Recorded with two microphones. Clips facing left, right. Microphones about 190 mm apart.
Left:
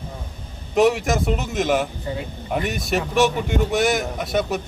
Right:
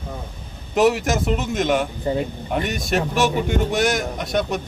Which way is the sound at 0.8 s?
Centre (ahead or behind).